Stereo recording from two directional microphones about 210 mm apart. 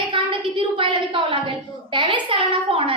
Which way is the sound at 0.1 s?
25° right (ahead or behind).